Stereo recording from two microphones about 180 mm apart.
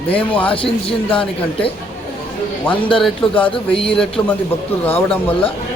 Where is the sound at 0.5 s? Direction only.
30° left (ahead or behind).